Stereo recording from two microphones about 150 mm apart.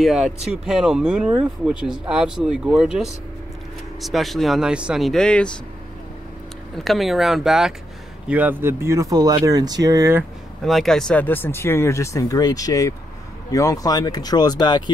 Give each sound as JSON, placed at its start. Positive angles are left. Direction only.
{"t": 0.0, "sound": "speech", "side_deg": 0}
{"t": 6.8, "sound": "speech", "side_deg": 0}
{"t": 10.6, "sound": "speech", "side_deg": 0}